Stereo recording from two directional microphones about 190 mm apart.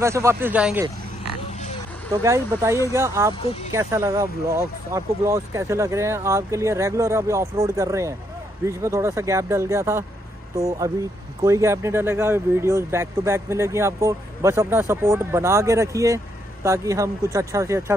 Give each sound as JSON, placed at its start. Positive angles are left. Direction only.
{"t": 0.0, "sound": "speech", "side_deg": -15}
{"t": 2.2, "sound": "speech", "side_deg": -15}